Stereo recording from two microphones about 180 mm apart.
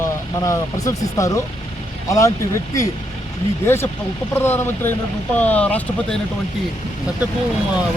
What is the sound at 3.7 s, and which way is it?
Speech, 15° left (ahead or behind).